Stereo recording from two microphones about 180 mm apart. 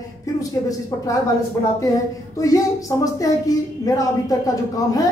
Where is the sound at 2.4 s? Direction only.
20° left (ahead or behind).